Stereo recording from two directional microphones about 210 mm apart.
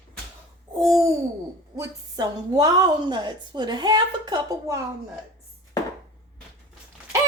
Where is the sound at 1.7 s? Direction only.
15° right (ahead or behind).